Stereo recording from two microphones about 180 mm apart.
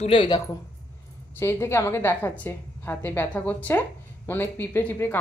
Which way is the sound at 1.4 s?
15° left (ahead or behind).